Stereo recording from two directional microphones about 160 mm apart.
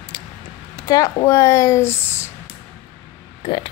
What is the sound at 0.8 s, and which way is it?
A woman's voice, 20° left (ahead or behind).